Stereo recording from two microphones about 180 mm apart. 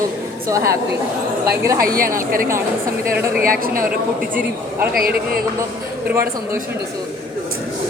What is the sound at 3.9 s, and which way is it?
A man's voice, 10° right (ahead or behind).